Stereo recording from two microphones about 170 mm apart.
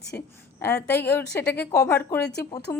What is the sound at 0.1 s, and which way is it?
A woman's voice, 10° left (ahead or behind).